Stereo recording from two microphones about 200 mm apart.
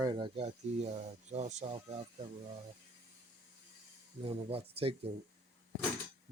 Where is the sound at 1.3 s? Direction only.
35° right (ahead or behind).